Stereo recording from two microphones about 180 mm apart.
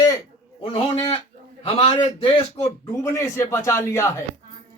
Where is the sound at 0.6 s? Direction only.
30° left (ahead or behind).